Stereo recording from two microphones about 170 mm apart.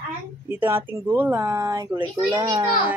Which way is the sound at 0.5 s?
10° right (ahead or behind).